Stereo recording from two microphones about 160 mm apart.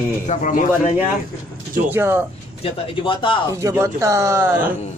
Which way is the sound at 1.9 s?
15° right (ahead or behind).